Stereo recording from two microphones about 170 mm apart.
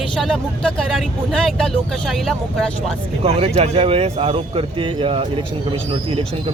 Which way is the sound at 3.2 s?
35° right (ahead or behind).